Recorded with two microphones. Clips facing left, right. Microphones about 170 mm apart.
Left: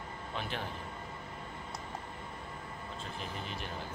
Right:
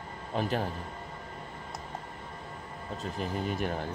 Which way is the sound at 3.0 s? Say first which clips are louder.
Right 10 dB; 45° right (ahead or behind).